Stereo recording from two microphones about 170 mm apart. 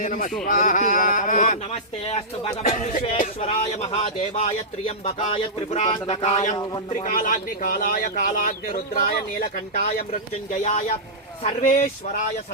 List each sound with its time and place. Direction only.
0.0 s speech: 50° left (ahead or behind)
2.6 s speech: 50° left (ahead or behind)